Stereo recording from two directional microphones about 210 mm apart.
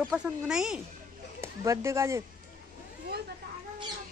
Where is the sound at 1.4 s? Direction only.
15° right (ahead or behind).